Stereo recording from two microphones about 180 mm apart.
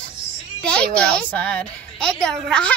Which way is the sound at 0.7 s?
5° left (ahead or behind).